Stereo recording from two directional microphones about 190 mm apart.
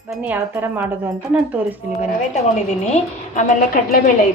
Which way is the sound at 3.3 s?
45° left (ahead or behind).